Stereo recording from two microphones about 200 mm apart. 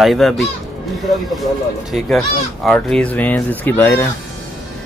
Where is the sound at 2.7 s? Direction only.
Centre (ahead or behind).